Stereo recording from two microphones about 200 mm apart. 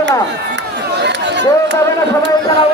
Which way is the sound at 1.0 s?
60° right (ahead or behind).